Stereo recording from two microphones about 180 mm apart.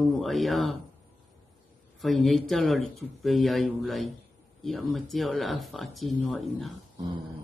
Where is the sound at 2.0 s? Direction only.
Centre (ahead or behind).